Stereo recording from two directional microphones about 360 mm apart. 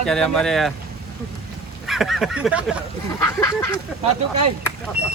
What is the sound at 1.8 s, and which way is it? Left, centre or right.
Speech, centre.